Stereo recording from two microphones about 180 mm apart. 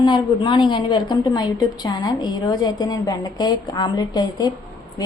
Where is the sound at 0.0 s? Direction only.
25° left (ahead or behind).